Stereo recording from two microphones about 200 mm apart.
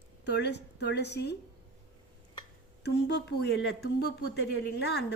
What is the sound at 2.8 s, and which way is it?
A woman's voice, 60° left (ahead or behind).